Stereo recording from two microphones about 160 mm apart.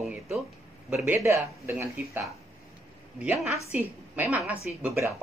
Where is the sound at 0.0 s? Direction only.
Centre (ahead or behind).